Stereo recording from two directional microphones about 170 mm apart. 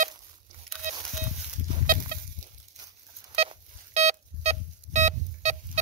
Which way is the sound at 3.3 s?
40° right (ahead or behind).